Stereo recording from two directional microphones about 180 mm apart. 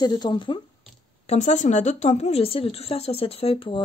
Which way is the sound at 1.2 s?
40° left (ahead or behind).